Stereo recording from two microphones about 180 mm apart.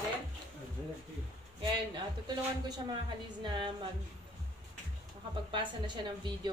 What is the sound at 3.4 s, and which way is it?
Speech, 30° right (ahead or behind).